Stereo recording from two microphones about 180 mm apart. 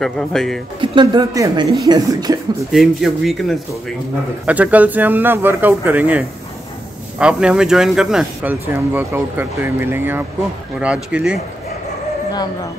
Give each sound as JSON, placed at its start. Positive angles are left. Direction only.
{"t": 0.0, "sound": "speech", "side_deg": 5}
{"t": 0.7, "sound": "speech", "side_deg": -25}
{"t": 2.7, "sound": "speech", "side_deg": 0}